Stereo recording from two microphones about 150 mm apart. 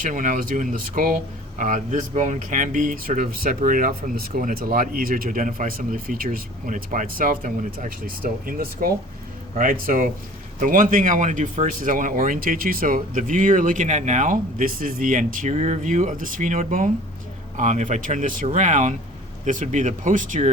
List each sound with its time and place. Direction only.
0.0 s speech: 60° right (ahead or behind)